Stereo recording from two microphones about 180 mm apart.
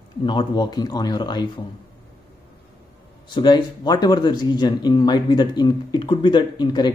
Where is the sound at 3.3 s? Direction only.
25° left (ahead or behind).